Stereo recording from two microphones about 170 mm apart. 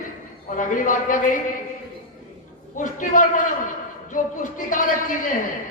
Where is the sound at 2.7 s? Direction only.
50° left (ahead or behind).